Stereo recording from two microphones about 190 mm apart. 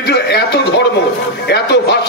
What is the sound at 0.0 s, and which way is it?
A man's voice, 60° left (ahead or behind).